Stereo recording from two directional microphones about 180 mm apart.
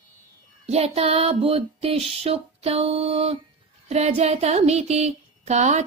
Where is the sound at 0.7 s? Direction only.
35° right (ahead or behind).